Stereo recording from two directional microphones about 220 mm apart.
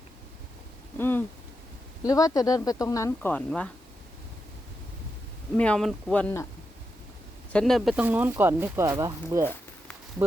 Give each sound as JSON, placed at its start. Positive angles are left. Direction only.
{"t": 0.9, "sound": "speech", "side_deg": 10}
{"t": 5.5, "sound": "speech", "side_deg": 5}
{"t": 7.5, "sound": "speech", "side_deg": 0}